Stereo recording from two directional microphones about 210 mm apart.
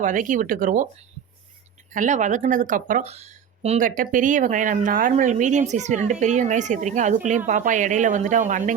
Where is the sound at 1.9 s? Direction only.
35° right (ahead or behind).